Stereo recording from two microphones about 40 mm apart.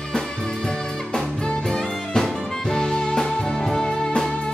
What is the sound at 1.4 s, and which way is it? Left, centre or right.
Music, centre.